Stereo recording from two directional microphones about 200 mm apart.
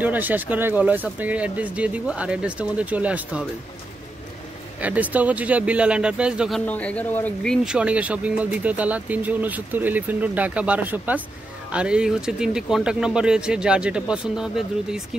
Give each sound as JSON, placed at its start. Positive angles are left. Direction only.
{"t": 0.0, "sound": "speech", "side_deg": -10}
{"t": 4.8, "sound": "speech", "side_deg": -5}
{"t": 6.6, "sound": "speech", "side_deg": 5}
{"t": 7.6, "sound": "speech", "side_deg": -5}